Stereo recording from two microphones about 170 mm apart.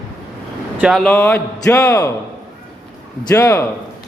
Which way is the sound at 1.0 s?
15° left (ahead or behind).